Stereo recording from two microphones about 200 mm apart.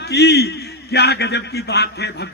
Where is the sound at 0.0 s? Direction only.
55° left (ahead or behind).